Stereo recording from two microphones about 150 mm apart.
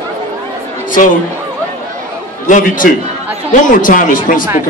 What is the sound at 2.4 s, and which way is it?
Speech, 60° left (ahead or behind).